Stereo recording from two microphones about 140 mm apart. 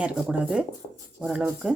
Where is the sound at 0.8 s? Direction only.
35° left (ahead or behind).